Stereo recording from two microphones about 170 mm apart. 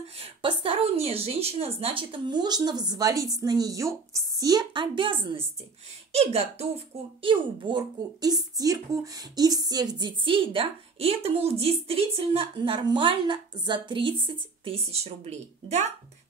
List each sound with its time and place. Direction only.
0.2 s a child's voice: 30° right (ahead or behind)